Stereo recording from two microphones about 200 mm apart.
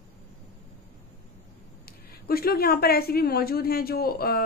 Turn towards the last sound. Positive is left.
turn(degrees=50)  # may be behind; listen again after turning